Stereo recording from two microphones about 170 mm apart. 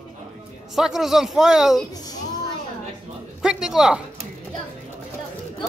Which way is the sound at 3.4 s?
5° right (ahead or behind).